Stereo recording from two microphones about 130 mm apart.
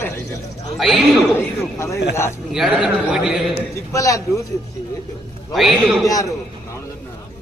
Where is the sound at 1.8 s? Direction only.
20° left (ahead or behind).